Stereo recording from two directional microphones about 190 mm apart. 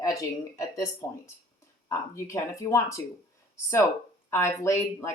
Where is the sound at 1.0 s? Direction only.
15° left (ahead or behind).